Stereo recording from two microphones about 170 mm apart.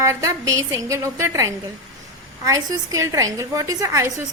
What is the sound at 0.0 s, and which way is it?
A woman's voice, 20° right (ahead or behind).